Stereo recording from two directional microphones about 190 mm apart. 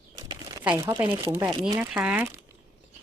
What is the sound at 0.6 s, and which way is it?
Speech, 10° right (ahead or behind).